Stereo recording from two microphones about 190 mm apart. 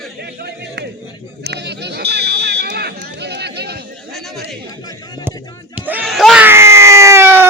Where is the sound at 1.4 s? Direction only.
60° right (ahead or behind).